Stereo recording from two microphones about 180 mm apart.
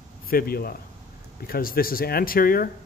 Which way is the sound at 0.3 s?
55° left (ahead or behind).